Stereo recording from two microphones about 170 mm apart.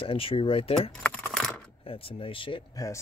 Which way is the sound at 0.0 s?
30° left (ahead or behind).